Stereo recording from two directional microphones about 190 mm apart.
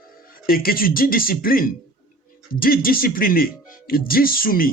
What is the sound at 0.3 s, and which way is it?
Speech, 50° left (ahead or behind).